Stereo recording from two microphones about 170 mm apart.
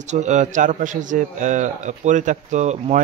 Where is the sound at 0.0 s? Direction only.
45° right (ahead or behind).